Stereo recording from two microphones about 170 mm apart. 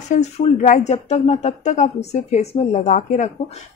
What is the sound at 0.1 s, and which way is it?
Speech, 45° left (ahead or behind).